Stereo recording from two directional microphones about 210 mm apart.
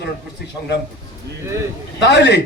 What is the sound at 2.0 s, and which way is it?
Speech, 55° left (ahead or behind).